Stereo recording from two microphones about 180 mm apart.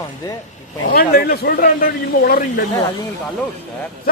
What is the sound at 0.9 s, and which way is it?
A man's voice, 55° left (ahead or behind).